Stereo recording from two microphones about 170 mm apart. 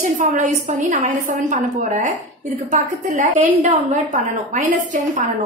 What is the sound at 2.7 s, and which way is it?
A woman's voice, 45° right (ahead or behind).